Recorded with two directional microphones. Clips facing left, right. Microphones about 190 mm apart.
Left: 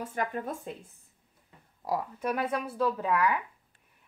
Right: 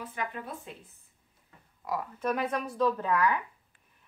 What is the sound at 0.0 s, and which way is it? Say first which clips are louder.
Speech: left 4 dB; 45° left (ahead or behind).